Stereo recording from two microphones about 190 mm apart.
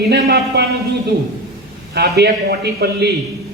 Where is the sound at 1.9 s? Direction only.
60° right (ahead or behind).